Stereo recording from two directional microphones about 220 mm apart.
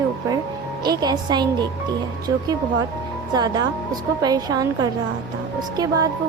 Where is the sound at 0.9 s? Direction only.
20° right (ahead or behind).